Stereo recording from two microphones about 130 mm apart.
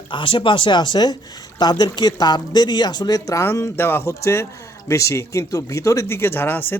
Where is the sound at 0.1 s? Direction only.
40° left (ahead or behind).